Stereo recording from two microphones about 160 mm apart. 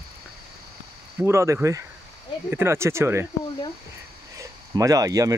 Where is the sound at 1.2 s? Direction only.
15° right (ahead or behind).